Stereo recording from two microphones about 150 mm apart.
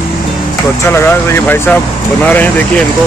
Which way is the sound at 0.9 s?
15° left (ahead or behind).